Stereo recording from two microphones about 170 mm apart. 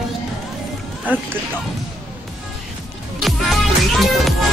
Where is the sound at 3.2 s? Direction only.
Centre (ahead or behind).